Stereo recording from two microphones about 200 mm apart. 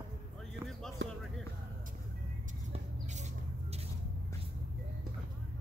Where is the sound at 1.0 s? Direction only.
60° right (ahead or behind).